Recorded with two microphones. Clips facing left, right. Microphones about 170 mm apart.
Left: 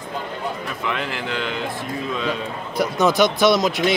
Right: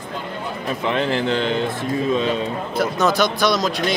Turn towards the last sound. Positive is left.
turn(degrees=20)  # may be behind; listen again after turning